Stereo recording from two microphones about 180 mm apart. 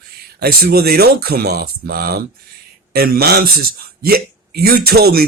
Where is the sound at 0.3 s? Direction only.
60° right (ahead or behind).